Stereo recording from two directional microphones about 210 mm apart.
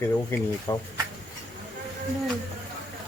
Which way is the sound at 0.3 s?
10° left (ahead or behind).